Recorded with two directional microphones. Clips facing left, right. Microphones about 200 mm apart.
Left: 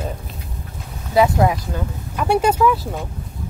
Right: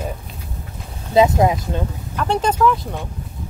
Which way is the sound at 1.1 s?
20° right (ahead or behind).